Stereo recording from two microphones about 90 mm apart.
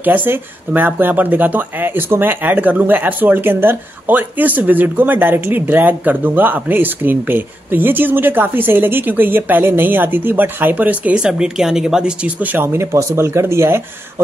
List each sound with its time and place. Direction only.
0.0 s speech: 20° right (ahead or behind)